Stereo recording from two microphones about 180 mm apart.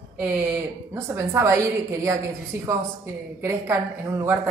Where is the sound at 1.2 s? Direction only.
15° right (ahead or behind).